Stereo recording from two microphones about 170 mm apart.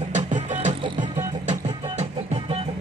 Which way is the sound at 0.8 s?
25° right (ahead or behind).